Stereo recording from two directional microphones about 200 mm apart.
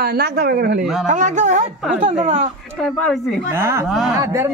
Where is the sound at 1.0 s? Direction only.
40° right (ahead or behind).